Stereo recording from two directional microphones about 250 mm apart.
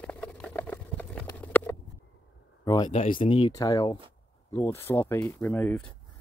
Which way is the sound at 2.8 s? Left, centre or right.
Left.